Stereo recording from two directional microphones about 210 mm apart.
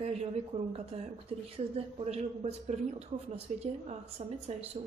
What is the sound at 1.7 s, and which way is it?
A man's voice, 30° right (ahead or behind).